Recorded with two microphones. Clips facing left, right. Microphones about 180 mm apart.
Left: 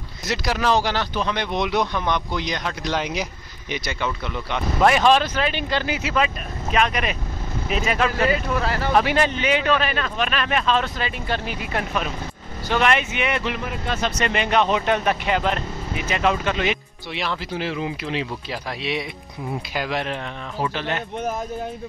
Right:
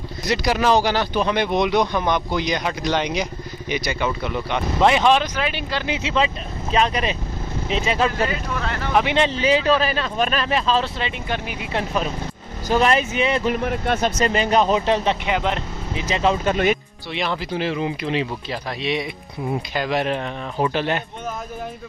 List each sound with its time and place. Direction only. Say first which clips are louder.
0.3 s speech: right 3 dB; centre (ahead or behind)
4.7 s speech: even; 20° right (ahead or behind)
5.9 s speech: right 1 dB; 25° right (ahead or behind)
11.7 s speech: right 3 dB; 30° right (ahead or behind); by 14.1 s 55° right (ahead or behind)
14.2 s speech: right 1 dB; 35° right (ahead or behind)
15.2 s speech: even; 15° right (ahead or behind)
17.1 s speech: right 3 dB; centre (ahead or behind)